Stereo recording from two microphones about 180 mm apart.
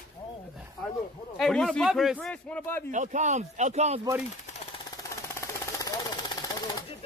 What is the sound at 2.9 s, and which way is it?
Speech, 40° right (ahead or behind).